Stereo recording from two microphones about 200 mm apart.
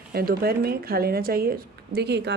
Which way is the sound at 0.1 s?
50° right (ahead or behind).